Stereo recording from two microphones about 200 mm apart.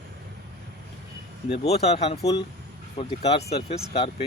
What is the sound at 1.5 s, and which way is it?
Speech, 30° left (ahead or behind).